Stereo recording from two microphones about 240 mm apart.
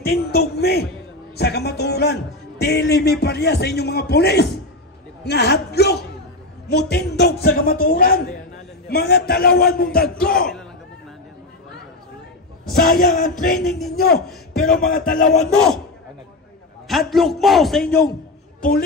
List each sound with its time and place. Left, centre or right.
0.0 s music: left
2.6 s a man's voice: left
12.7 s a man's voice: left
13.7 s a man's voice: centre
14.5 s a man's voice: left
16.8 s a man's voice: centre